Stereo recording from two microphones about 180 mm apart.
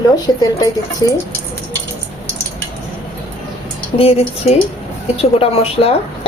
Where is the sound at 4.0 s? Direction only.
35° left (ahead or behind).